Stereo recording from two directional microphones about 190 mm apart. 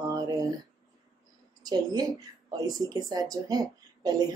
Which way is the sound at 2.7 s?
20° right (ahead or behind).